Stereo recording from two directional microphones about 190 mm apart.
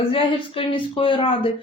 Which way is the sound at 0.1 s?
30° left (ahead or behind).